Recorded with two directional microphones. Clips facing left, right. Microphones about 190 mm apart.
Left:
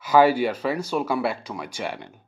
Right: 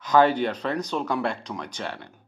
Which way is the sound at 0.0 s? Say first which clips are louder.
Left 2 dB; 10° left (ahead or behind).